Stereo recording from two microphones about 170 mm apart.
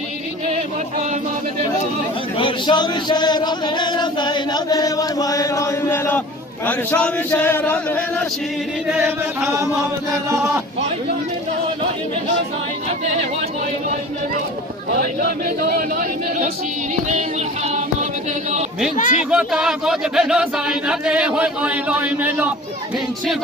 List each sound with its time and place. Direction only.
2.4 s a sound: 25° left (ahead or behind)
6.7 s speech: 10° left (ahead or behind)
8.9 s speech: 10° right (ahead or behind)
14.9 s speech: 65° right (ahead or behind)
18.9 s speech: 45° left (ahead or behind)
19.3 s speech: 5° right (ahead or behind)